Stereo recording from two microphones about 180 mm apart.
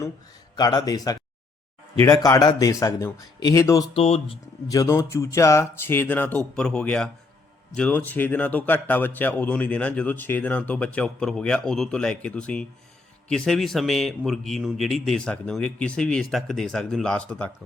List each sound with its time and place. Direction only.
0.5 s speech: 20° left (ahead or behind)
3.9 s speech: 35° left (ahead or behind)
4.7 s speech: 20° left (ahead or behind)